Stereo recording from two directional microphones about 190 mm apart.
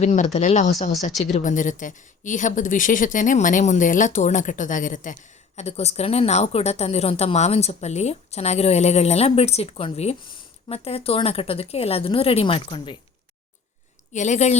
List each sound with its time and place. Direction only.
0.0 s a woman's voice: 40° left (ahead or behind)
14.1 s a woman's voice: 40° left (ahead or behind)